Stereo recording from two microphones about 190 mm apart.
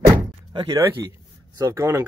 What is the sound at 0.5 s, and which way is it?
Speech, 20° right (ahead or behind).